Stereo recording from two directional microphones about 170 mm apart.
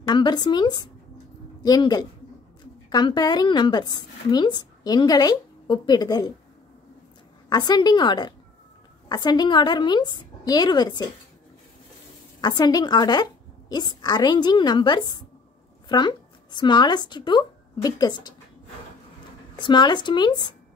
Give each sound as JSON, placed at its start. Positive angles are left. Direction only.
{"t": 0.0, "sound": "a woman's voice", "side_deg": 25}
{"t": 7.4, "sound": "a woman's voice", "side_deg": 25}
{"t": 12.4, "sound": "a woman's voice", "side_deg": 25}
{"t": 19.5, "sound": "a woman's voice", "side_deg": 25}